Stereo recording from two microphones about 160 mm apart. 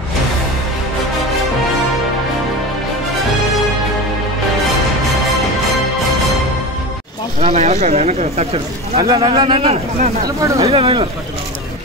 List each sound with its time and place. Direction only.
7.3 s speech: 40° right (ahead or behind)
9.0 s speech: 20° right (ahead or behind)
9.3 s speech: 35° right (ahead or behind)
10.2 s speech: 20° right (ahead or behind)
10.7 s speech: 35° right (ahead or behind)